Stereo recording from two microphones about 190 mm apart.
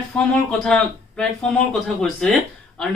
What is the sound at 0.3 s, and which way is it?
A man's voice, 5° left (ahead or behind).